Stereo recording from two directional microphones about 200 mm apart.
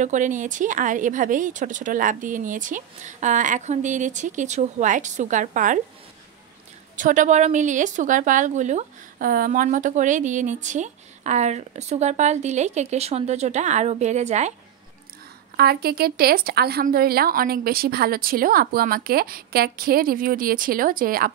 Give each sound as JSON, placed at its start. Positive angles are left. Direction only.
{"t": 0.0, "sound": "a woman's voice", "side_deg": -40}
{"t": 7.0, "sound": "a woman's voice", "side_deg": -40}
{"t": 15.5, "sound": "speech", "side_deg": -50}